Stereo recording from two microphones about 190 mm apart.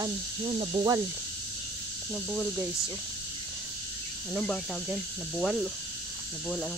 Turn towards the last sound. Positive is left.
turn(degrees=0)  # may be behind; listen again after turning